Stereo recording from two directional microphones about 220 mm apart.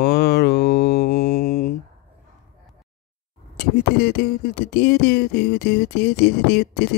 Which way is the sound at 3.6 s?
45° left (ahead or behind).